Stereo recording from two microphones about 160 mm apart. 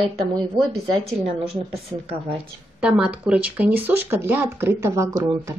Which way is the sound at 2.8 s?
5° right (ahead or behind).